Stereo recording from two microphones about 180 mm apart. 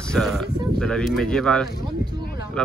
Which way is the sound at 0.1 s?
Centre (ahead or behind).